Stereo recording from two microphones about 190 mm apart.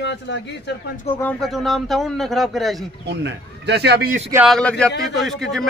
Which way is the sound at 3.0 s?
65° right (ahead or behind).